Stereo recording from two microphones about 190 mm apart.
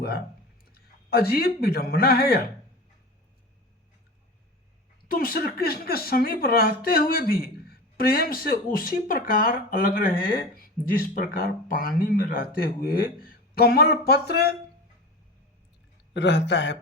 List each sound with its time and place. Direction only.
0.6 s speech: 50° left (ahead or behind)
5.0 s speech: 50° left (ahead or behind)
16.1 s speech: 65° left (ahead or behind)